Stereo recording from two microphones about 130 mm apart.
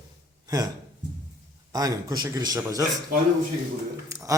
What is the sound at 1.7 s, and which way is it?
A man's voice, 30° right (ahead or behind).